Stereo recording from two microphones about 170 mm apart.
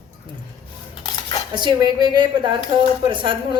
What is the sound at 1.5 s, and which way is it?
A woman's voice, 25° right (ahead or behind).